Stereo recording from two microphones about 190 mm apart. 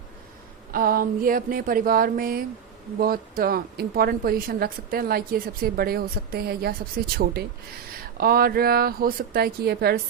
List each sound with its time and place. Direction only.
0.7 s speech: 50° right (ahead or behind)
7.9 s speech: 50° right (ahead or behind)